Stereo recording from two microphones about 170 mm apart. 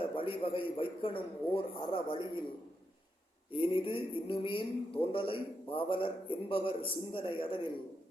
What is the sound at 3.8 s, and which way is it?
A man's voice, 30° left (ahead or behind).